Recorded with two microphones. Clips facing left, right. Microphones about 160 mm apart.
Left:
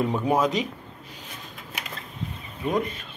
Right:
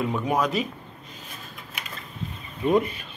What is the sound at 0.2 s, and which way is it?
Speech, 25° left (ahead or behind).